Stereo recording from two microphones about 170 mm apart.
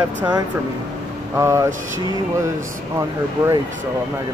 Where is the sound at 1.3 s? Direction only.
15° right (ahead or behind).